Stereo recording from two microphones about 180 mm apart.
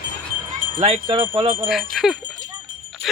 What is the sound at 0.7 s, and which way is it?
Jingle bell, 30° right (ahead or behind).